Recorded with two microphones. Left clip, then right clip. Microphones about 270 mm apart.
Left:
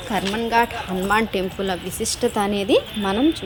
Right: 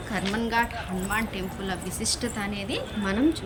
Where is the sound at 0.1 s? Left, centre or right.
Centre.